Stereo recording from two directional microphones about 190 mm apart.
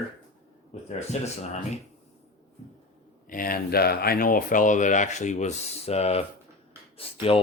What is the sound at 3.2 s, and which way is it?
Speech, 45° left (ahead or behind).